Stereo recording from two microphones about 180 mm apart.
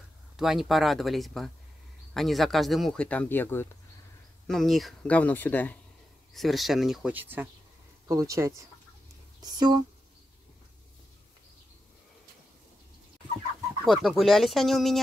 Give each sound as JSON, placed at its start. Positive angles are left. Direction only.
{"t": 0.4, "sound": "speech", "side_deg": 0}
{"t": 4.5, "sound": "speech", "side_deg": 0}
{"t": 13.8, "sound": "speech", "side_deg": 0}